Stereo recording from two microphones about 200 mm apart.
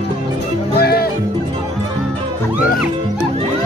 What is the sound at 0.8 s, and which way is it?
Music, 50° left (ahead or behind).